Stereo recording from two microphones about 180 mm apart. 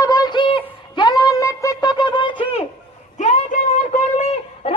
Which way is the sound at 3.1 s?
40° left (ahead or behind).